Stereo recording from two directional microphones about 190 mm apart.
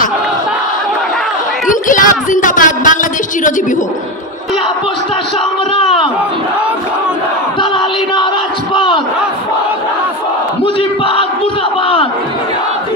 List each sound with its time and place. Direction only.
1.7 s a sound: 45° left (ahead or behind)
8.7 s a man's voice: 25° left (ahead or behind)
10.6 s crowd: 30° left (ahead or behind)